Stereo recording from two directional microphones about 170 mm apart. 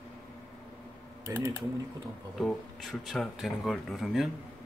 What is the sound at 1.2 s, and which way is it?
Speech, 15° right (ahead or behind).